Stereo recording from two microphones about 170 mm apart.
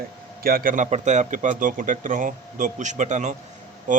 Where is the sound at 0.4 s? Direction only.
60° right (ahead or behind).